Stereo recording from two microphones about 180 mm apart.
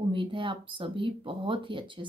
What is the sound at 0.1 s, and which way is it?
A woman's voice, 30° right (ahead or behind).